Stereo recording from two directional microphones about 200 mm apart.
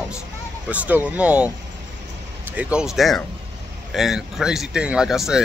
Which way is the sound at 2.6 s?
5° right (ahead or behind).